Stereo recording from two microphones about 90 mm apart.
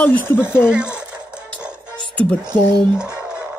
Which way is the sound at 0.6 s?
10° right (ahead or behind).